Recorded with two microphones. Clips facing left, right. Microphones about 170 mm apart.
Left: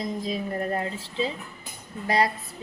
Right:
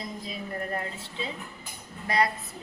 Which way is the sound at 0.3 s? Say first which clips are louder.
Left 4 dB; 30° left (ahead or behind).